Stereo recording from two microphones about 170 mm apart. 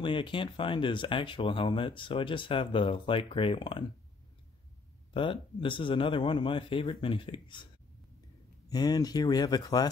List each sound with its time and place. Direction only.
0.0 s speech: 30° left (ahead or behind)
5.1 s speech: 30° left (ahead or behind)
8.6 s speech: 25° left (ahead or behind)